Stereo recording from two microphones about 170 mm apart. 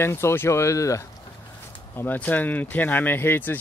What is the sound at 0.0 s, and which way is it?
Speech, 15° left (ahead or behind).